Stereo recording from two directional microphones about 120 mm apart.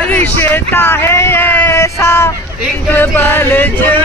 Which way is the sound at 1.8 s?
20° left (ahead or behind).